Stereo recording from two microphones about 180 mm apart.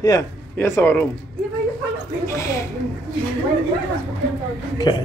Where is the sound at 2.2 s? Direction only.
15° left (ahead or behind).